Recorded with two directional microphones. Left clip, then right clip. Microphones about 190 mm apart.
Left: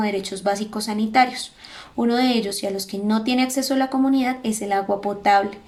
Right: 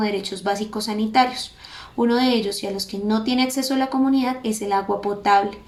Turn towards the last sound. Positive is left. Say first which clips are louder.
# even
turn(degrees=15)  # may be behind; listen again after turning